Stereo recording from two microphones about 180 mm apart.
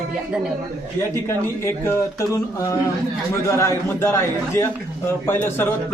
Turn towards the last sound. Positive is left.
turn(degrees=10)  # may be behind; listen again after turning